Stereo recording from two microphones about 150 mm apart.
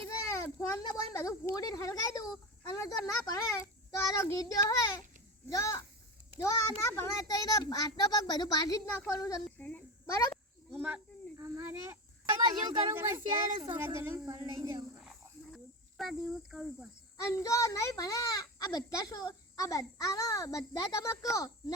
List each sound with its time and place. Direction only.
0.2 s a child's voice: 20° left (ahead or behind)
2.6 s a sound: 20° left (ahead or behind)
3.1 s a child's voice: 20° left (ahead or behind)
9.6 s a sound: 10° left (ahead or behind)
10.1 s a child's voice: 20° left (ahead or behind)
10.8 s a sound: 15° right (ahead or behind)
12.9 s a child's voice: 15° right (ahead or behind)
15.5 s speech: centre (ahead or behind)
17.2 s a child's voice: 20° left (ahead or behind)